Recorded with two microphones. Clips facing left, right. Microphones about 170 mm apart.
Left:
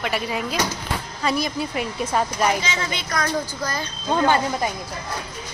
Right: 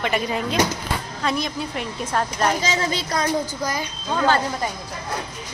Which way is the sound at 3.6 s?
15° right (ahead or behind).